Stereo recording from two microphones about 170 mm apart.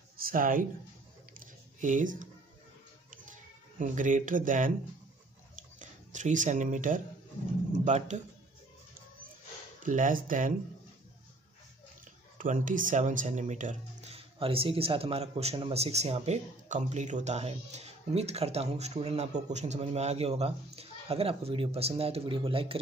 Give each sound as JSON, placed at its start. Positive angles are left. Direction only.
{"t": 0.2, "sound": "speech", "side_deg": -55}
{"t": 1.8, "sound": "speech", "side_deg": -50}
{"t": 3.7, "sound": "speech", "side_deg": -50}
{"t": 5.8, "sound": "speech", "side_deg": -45}
{"t": 9.8, "sound": "speech", "side_deg": -50}
{"t": 12.4, "sound": "speech", "side_deg": -50}